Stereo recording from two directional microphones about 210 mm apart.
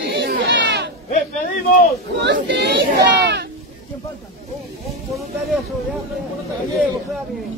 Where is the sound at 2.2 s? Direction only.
55° right (ahead or behind).